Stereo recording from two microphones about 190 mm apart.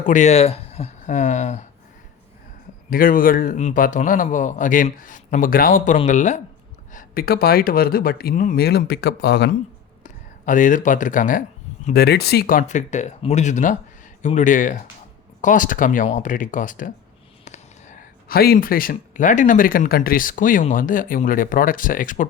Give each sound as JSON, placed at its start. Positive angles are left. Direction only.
{"t": 0.0, "sound": "speech", "side_deg": 40}
{"t": 2.9, "sound": "a man's voice", "side_deg": 45}
{"t": 6.9, "sound": "a man's voice", "side_deg": 50}
{"t": 10.0, "sound": "speech", "side_deg": 45}
{"t": 11.9, "sound": "a man's voice", "side_deg": 55}